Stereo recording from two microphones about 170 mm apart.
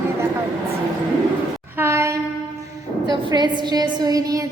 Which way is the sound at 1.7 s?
15° right (ahead or behind).